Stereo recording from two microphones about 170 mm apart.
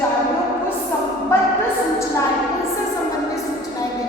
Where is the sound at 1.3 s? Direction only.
15° left (ahead or behind).